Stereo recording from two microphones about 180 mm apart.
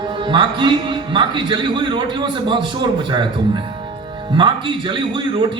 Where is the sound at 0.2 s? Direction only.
25° right (ahead or behind).